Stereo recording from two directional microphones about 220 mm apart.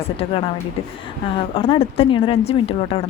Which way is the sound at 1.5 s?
25° left (ahead or behind).